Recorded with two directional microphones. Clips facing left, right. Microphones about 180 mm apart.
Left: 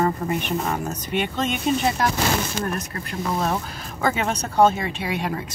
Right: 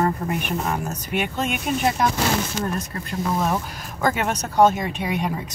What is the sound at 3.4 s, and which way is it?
Speech, 15° right (ahead or behind).